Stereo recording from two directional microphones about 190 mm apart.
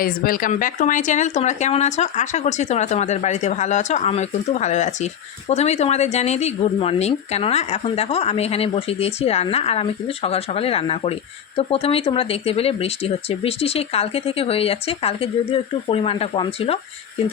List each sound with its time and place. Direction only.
0.0 s speech: 50° left (ahead or behind); by 16.7 s 30° left (ahead or behind)